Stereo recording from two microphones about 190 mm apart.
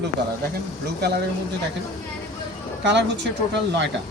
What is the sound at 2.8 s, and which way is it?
Speech, 65° right (ahead or behind).